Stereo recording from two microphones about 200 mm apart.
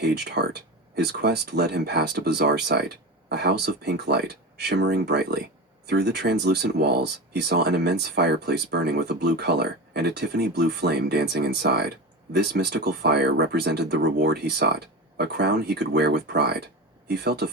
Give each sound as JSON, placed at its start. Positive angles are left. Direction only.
{"t": 0.0, "sound": "speech", "side_deg": -55}